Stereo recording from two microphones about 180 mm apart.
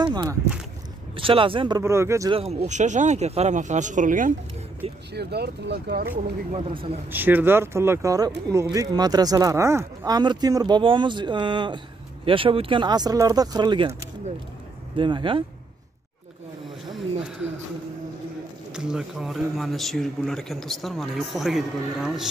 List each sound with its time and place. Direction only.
0.0 s speech: 25° right (ahead or behind)
1.8 s speech: 15° right (ahead or behind)
2.3 s speech: 35° right (ahead or behind)
5.1 s speech: 65° right (ahead or behind)
6.5 s speech: 30° right (ahead or behind)
7.1 s speech: 10° right (ahead or behind); by 15.4 s 25° right (ahead or behind)
18.7 s speech: 5° right (ahead or behind)